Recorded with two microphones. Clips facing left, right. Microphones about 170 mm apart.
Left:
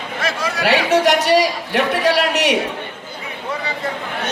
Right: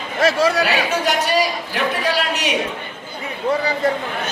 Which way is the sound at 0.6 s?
70° left (ahead or behind).